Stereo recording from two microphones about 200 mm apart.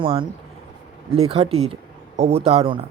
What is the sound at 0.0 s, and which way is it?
Speech, 25° right (ahead or behind).